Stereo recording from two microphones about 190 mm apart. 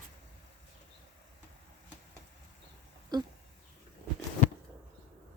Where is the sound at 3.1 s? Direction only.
20° right (ahead or behind).